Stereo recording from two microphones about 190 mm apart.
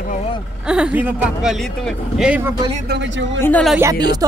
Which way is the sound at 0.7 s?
5° right (ahead or behind).